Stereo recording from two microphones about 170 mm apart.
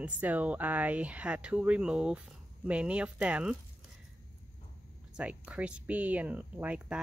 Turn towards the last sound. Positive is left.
turn(degrees=-10)  # may be behind; listen again after turning